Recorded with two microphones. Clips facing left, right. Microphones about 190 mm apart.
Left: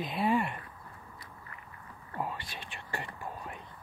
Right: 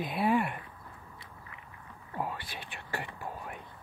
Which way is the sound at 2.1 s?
5° right (ahead or behind).